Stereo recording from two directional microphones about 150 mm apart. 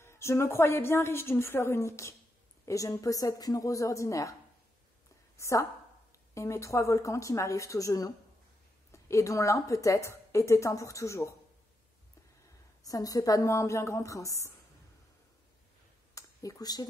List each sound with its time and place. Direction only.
0.0 s a woman's voice: 20° left (ahead or behind)
5.4 s a woman's voice: 20° left (ahead or behind)
12.8 s a woman's voice: 25° left (ahead or behind)
16.2 s a sound: 25° left (ahead or behind)